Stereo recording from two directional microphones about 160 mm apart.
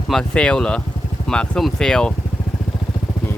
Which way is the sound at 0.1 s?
5° left (ahead or behind).